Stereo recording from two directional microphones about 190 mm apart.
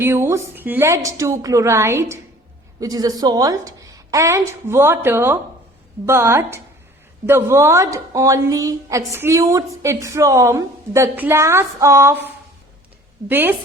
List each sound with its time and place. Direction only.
0.0 s a woman's voice: 15° right (ahead or behind)